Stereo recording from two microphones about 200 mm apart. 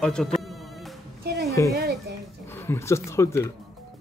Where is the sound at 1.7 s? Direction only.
55° right (ahead or behind).